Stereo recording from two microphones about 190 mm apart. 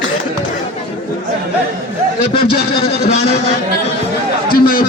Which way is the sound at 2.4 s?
55° left (ahead or behind).